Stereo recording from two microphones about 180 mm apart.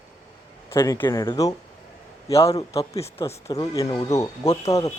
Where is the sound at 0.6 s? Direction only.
15° left (ahead or behind).